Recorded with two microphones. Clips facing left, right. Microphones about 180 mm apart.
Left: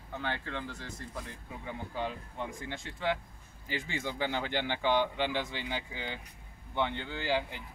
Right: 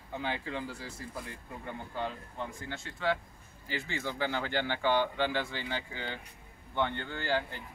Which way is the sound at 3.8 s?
15° left (ahead or behind).